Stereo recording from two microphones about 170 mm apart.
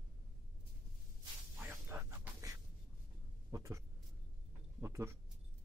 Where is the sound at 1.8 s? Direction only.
15° right (ahead or behind).